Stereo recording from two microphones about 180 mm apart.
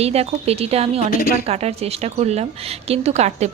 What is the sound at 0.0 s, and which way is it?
Speech, 35° right (ahead or behind).